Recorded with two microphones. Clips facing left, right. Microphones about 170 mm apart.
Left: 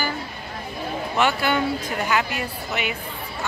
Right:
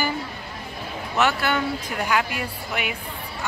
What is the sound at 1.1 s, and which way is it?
Speech, centre (ahead or behind).